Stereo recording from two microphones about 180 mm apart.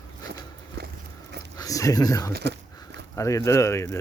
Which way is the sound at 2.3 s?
70° right (ahead or behind).